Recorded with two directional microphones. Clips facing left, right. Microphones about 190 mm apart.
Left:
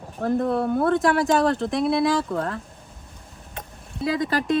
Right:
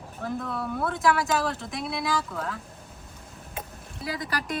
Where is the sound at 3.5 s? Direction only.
5° right (ahead or behind).